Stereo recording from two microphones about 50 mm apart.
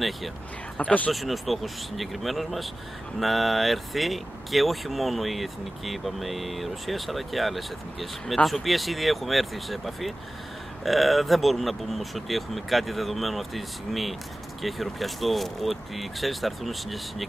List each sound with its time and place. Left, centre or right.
0.7 s speech: left
1.1 s speech: centre